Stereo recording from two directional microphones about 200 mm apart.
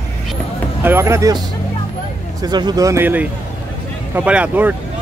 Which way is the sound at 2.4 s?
20° right (ahead or behind).